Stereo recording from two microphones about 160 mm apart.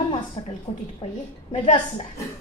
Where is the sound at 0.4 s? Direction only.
40° left (ahead or behind).